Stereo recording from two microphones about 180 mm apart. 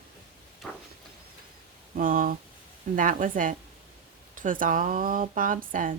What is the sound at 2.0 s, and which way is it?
Speech, 50° right (ahead or behind).